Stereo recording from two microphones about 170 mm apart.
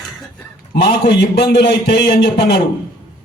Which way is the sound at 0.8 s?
75° left (ahead or behind).